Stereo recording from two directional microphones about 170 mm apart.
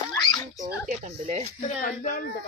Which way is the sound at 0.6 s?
45° right (ahead or behind).